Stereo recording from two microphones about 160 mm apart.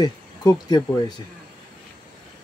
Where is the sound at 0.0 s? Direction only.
25° left (ahead or behind).